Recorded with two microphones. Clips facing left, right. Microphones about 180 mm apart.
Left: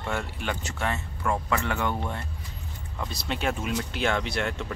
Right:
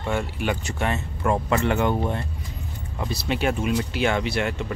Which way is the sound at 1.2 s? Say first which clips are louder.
Right 6 dB; 30° right (ahead or behind).